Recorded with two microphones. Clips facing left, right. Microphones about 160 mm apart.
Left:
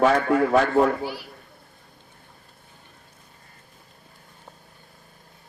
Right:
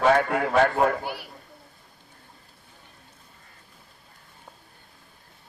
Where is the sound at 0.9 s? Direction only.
60° right (ahead or behind).